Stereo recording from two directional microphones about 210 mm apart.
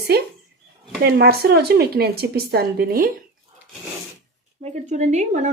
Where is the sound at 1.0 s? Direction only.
50° right (ahead or behind).